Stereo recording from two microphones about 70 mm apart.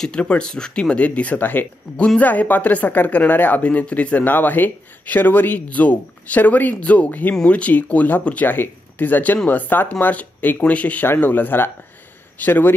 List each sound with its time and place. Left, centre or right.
0.0 s a woman's voice: centre